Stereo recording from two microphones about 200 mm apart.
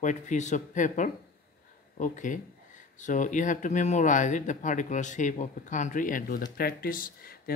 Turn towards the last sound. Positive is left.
turn(degrees=45)  # may be behind; listen again after turning